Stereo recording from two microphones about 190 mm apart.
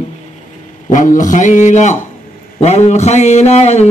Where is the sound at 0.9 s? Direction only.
45° left (ahead or behind).